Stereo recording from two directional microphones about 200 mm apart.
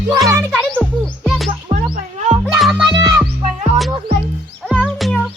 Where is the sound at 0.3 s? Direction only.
15° right (ahead or behind).